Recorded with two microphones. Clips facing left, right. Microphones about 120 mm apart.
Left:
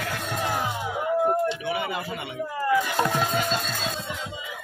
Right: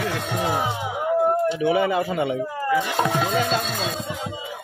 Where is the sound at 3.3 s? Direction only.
90° right.